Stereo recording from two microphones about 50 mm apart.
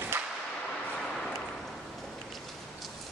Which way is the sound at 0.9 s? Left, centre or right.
Centre.